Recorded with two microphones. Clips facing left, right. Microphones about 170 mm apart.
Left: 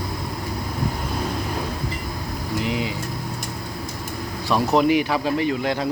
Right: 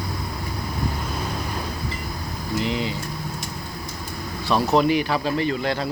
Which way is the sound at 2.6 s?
10° left (ahead or behind).